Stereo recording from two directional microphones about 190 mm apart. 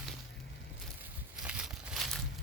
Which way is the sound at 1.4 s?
5° right (ahead or behind).